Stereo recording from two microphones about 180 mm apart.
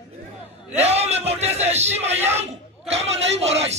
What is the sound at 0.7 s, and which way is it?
A man's voice, 35° right (ahead or behind).